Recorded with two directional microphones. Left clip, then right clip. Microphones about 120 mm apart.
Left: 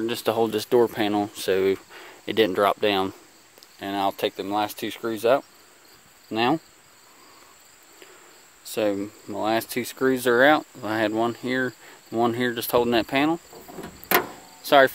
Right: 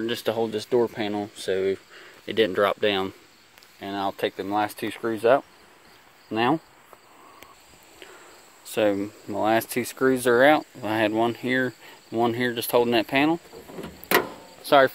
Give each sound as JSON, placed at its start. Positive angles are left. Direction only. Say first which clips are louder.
{"t": 0.0, "sound": "speech", "louder": "left 2 dB", "side_deg": 30}
{"t": 3.8, "sound": "speech", "louder": "left 2 dB", "side_deg": 45}
{"t": 4.6, "sound": "cricket", "louder": "right 1 dB", "side_deg": 20}
{"t": 8.7, "sound": "speech", "louder": "right 2 dB", "side_deg": 15}
{"t": 12.1, "sound": "cricket", "louder": "left 1 dB", "side_deg": 30}
{"t": 14.6, "sound": "cricket", "louder": "left 1 dB", "side_deg": 25}